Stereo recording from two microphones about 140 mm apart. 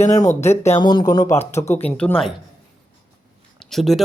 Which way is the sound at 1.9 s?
10° left (ahead or behind).